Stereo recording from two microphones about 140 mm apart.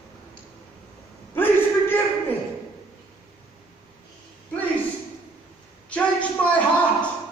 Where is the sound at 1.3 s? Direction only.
15° left (ahead or behind).